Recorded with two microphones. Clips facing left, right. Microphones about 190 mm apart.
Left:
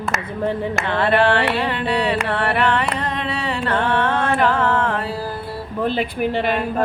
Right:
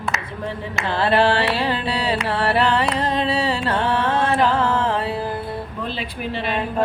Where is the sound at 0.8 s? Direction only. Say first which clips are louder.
Even; 30° right (ahead or behind).